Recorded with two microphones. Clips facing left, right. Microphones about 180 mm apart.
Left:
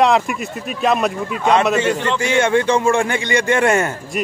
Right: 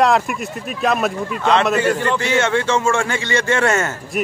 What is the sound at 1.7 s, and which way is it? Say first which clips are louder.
Speech: even; 5° right (ahead or behind).